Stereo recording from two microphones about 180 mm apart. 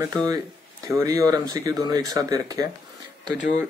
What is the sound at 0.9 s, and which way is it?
Speech, 15° right (ahead or behind).